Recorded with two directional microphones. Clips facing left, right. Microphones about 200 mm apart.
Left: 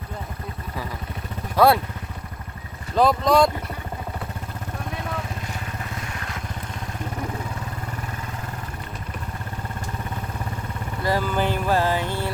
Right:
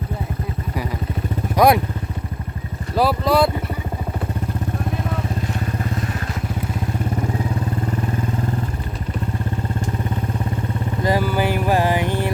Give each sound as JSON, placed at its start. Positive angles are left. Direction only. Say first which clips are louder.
{"t": 1.5, "sound": "speech", "louder": "right 2 dB", "side_deg": -15}
{"t": 2.9, "sound": "speech", "louder": "even", "side_deg": -5}
{"t": 11.0, "sound": "vehicle", "louder": "right 3 dB", "side_deg": -15}